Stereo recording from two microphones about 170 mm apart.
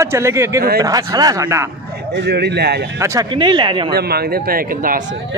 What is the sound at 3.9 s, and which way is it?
A man's voice, 65° right (ahead or behind).